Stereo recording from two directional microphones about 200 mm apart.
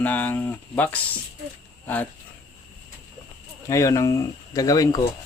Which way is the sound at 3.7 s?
15° left (ahead or behind).